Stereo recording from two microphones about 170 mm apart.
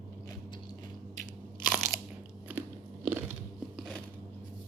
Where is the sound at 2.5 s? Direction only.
10° right (ahead or behind).